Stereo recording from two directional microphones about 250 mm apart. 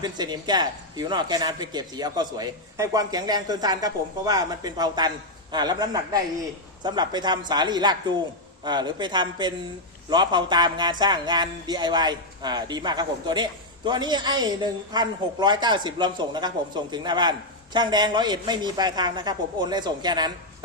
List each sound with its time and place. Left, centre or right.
0.0 s speech: centre